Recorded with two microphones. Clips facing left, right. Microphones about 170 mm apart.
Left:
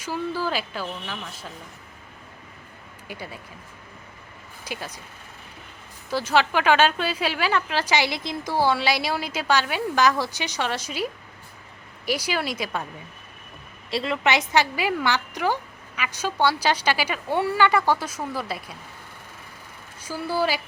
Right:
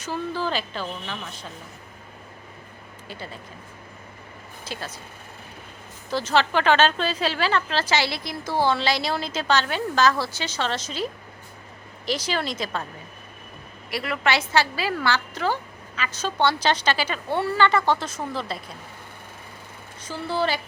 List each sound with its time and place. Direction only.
0.0 s a woman's voice: 10° left (ahead or behind)
3.1 s a woman's voice: 10° left (ahead or behind)
4.6 s speech: 15° left (ahead or behind)
6.1 s a woman's voice: 10° left (ahead or behind)
13.9 s a woman's voice: 25° left (ahead or behind)
20.0 s a woman's voice: 10° left (ahead or behind)